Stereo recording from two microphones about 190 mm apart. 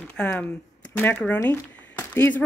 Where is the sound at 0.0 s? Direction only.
5° left (ahead or behind).